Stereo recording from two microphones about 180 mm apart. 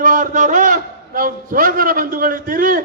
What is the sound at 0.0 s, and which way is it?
A man's voice, 45° right (ahead or behind).